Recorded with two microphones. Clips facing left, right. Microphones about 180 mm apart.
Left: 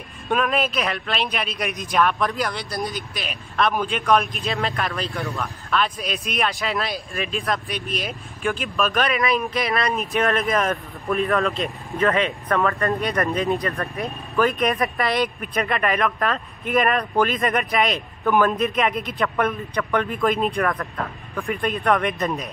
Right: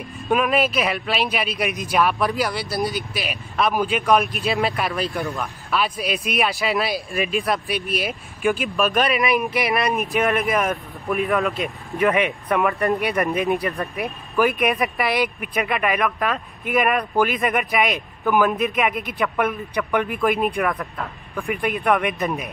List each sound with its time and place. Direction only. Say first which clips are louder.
0.3 s speech: right 3 dB; 5° right (ahead or behind)
11.2 s speech: even; 5° right (ahead or behind)
14.3 s speech: right 1 dB; 5° right (ahead or behind)
21.5 s speech: right 1 dB; 15° right (ahead or behind)